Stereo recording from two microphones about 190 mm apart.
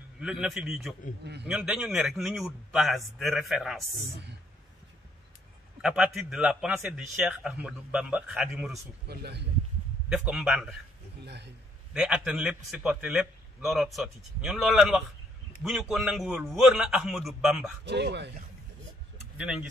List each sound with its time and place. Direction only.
0.2 s a man's voice: 5° right (ahead or behind)
1.2 s speech: 60° right (ahead or behind)
1.5 s a man's voice: 5° right (ahead or behind)
5.8 s a man's voice: 5° right (ahead or behind)
9.0 s speech: 60° right (ahead or behind)
10.0 s a man's voice: 5° right (ahead or behind)
11.2 s speech: 60° right (ahead or behind)
11.9 s a man's voice: 5° right (ahead or behind)
17.8 s speech: 65° right (ahead or behind)
19.3 s speech: 5° right (ahead or behind)